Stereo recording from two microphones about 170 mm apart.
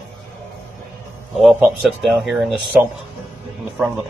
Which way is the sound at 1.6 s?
5° right (ahead or behind).